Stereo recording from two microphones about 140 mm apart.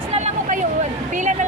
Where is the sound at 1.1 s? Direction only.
60° right (ahead or behind).